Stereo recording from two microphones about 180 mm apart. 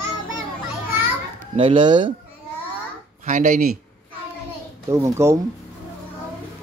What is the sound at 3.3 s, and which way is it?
Speech, 45° right (ahead or behind).